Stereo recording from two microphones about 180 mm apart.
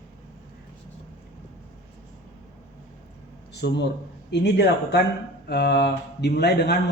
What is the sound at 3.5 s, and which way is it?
A man's voice, 65° left (ahead or behind).